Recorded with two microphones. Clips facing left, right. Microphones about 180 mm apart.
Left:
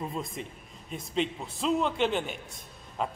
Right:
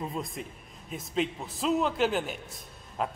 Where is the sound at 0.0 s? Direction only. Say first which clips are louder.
Even; centre (ahead or behind).